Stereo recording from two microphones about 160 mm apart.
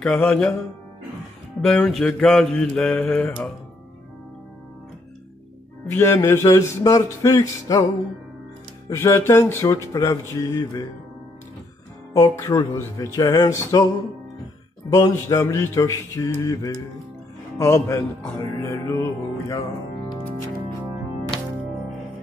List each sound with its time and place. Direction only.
0.0 s mantra: 5° left (ahead or behind)
1.6 s mantra: centre (ahead or behind)
5.9 s speech: 15° left (ahead or behind)
8.8 s mantra: 15° left (ahead or behind)
10.3 s speech: 20° left (ahead or behind)
12.1 s speech: 20° left (ahead or behind)
15.0 s mantra: 20° left (ahead or behind)